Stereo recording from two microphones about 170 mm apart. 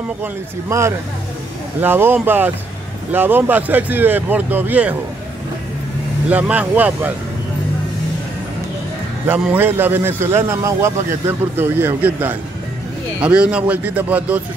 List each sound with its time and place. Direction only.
0.2 s a man's voice: 15° right (ahead or behind)
6.3 s a man's voice: 10° right (ahead or behind)
9.3 s a man's voice: 10° right (ahead or behind)